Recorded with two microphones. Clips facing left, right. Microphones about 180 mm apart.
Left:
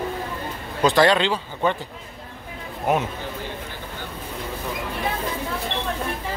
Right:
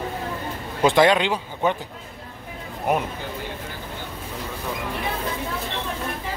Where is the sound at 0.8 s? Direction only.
15° right (ahead or behind).